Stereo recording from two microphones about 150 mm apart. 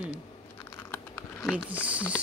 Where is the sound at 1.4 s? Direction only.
5° right (ahead or behind).